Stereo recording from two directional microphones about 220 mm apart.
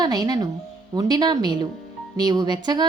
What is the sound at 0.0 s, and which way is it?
A woman's voice, 15° right (ahead or behind).